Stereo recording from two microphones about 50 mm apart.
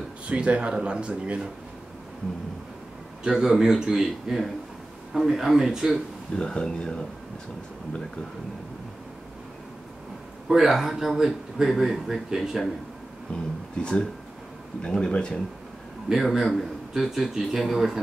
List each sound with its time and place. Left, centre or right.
0.3 s speech: right
3.3 s a man's voice: centre
6.3 s speech: centre
10.5 s speech: centre
14.8 s speech: centre
16.1 s speech: centre